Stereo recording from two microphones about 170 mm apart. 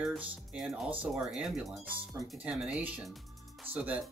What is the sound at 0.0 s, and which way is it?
Speech, 5° right (ahead or behind).